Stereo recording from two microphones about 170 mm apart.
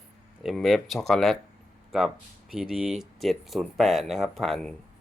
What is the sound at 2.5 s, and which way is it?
Speech, 5° right (ahead or behind).